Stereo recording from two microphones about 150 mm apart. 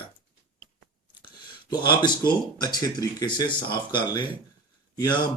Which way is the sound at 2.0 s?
30° left (ahead or behind).